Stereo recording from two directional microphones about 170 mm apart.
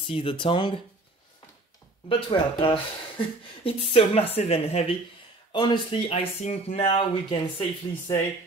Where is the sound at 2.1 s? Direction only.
30° left (ahead or behind).